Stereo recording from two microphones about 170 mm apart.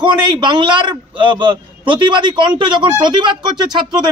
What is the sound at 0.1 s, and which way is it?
Speech, 25° right (ahead or behind).